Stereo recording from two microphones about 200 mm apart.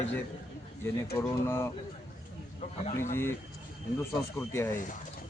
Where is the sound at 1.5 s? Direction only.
10° left (ahead or behind).